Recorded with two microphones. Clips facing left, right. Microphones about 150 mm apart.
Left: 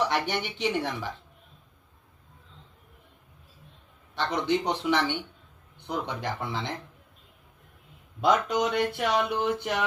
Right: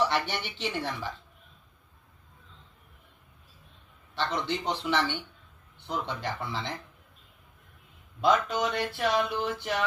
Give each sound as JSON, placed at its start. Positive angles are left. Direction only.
{"t": 0.1, "sound": "speech", "side_deg": 15}
{"t": 4.1, "sound": "speech", "side_deg": 20}
{"t": 8.2, "sound": "speech", "side_deg": 15}